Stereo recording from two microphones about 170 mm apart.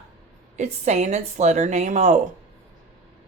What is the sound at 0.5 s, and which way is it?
Speech, 40° right (ahead or behind).